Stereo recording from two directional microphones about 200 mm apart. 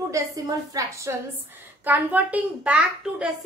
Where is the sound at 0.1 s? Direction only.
15° right (ahead or behind).